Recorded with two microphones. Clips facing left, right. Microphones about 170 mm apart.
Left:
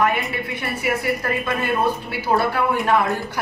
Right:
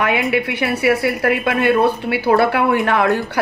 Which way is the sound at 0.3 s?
75° right (ahead or behind).